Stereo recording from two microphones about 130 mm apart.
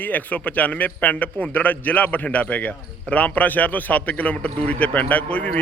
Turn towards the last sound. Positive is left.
turn(degrees=10)  # may be behind; listen again after turning